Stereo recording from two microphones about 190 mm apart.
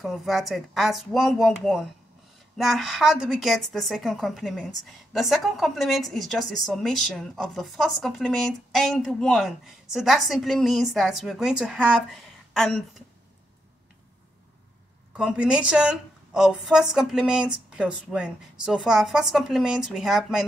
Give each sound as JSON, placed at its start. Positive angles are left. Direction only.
{"t": 0.0, "sound": "a woman's voice", "side_deg": 0}
{"t": 15.1, "sound": "a woman's voice", "side_deg": -5}